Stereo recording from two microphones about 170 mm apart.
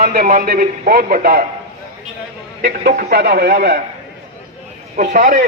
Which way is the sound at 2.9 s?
50° right (ahead or behind).